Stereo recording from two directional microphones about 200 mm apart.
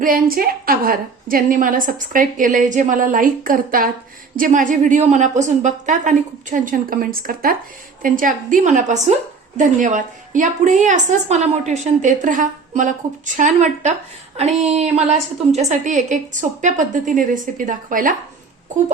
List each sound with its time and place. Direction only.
0.0 s a woman's voice: 45° right (ahead or behind)